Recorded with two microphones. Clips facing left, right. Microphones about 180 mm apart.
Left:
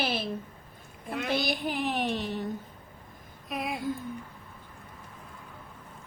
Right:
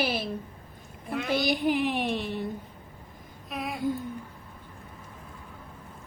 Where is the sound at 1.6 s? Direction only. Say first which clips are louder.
Right 5 dB; 15° right (ahead or behind).